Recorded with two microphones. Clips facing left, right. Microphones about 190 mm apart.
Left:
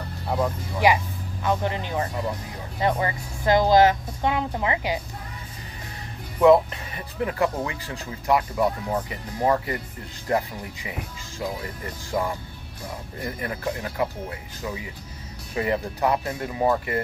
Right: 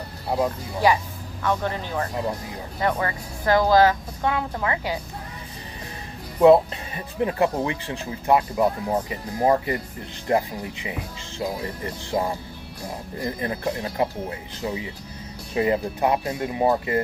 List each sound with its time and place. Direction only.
1.4 s speech: 15° left (ahead or behind)
6.4 s speech: 25° right (ahead or behind)